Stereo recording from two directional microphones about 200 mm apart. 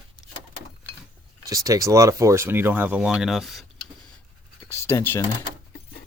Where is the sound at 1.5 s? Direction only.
15° right (ahead or behind); by 3.7 s centre (ahead or behind).